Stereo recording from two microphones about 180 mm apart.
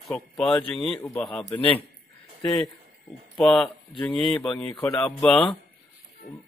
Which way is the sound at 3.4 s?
5° left (ahead or behind).